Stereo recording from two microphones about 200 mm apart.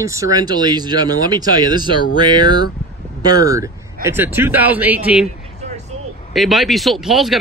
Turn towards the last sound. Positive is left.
turn(degrees=0)  # may be behind; listen again after turning